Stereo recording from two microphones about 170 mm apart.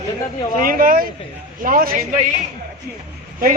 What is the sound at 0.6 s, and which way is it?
Speech, 55° right (ahead or behind).